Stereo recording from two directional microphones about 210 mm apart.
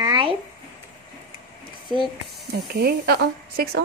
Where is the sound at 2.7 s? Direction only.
50° right (ahead or behind).